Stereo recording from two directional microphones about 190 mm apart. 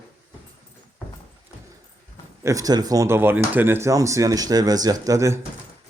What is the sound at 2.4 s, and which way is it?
Speech, 20° right (ahead or behind).